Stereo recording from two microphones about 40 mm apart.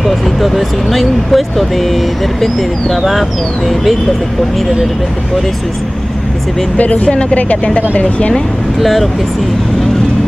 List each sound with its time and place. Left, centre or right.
0.0 s speech: centre
3.1 s speech: centre
7.1 s speech: left
7.3 s speech: left
8.8 s speech: centre